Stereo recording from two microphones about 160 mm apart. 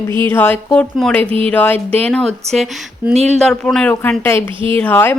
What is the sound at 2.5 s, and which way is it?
Speech, 40° right (ahead or behind).